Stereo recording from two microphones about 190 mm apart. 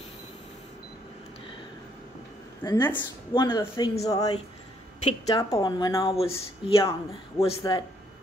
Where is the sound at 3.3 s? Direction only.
25° left (ahead or behind).